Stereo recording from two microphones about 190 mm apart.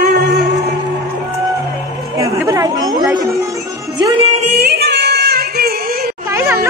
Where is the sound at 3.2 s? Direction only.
15° right (ahead or behind).